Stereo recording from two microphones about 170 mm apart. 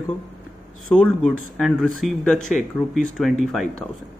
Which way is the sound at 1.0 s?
Centre (ahead or behind).